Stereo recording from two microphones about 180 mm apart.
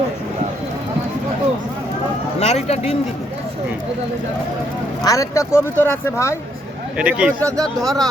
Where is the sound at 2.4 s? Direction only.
35° left (ahead or behind).